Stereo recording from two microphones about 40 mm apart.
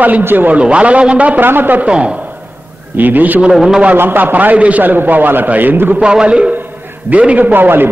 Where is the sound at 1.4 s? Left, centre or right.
Right.